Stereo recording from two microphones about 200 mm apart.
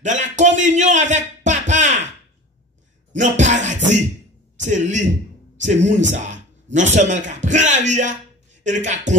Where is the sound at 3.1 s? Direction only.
40° right (ahead or behind).